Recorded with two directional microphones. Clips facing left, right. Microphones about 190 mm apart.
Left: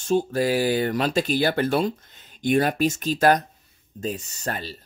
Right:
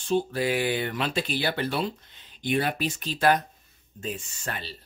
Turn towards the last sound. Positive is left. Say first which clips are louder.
# left 5 dB
turn(degrees=40)  # may be behind; listen again after turning